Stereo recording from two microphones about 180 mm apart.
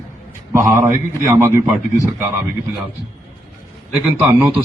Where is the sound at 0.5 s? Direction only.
15° right (ahead or behind).